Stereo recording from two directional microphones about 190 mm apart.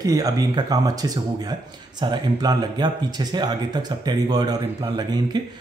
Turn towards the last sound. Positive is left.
turn(degrees=-20)  # may be behind; listen again after turning